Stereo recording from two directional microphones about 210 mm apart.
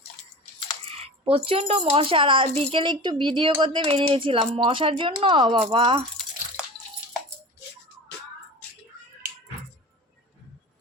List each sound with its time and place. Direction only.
0.9 s coin: 25° right (ahead or behind)
1.5 s speech: 25° right (ahead or behind)